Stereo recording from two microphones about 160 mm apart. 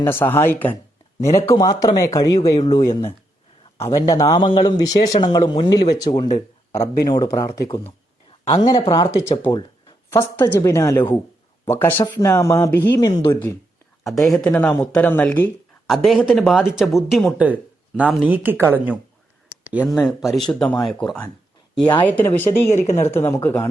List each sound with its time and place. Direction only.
0.0 s a woman's voice: 15° left (ahead or behind)
1.5 s speech: 25° left (ahead or behind)
6.1 s speech: 35° left (ahead or behind)
6.7 s speech: 20° left (ahead or behind)
8.9 s speech: 25° left (ahead or behind)
10.1 s a woman's voice: 15° left (ahead or behind)
14.0 s speech: centre (ahead or behind)
15.9 s speech: centre (ahead or behind)
22.2 s a woman's voice: 15° left (ahead or behind)
22.7 s speech: 45° left (ahead or behind)
23.1 s a woman's voice: 15° left (ahead or behind)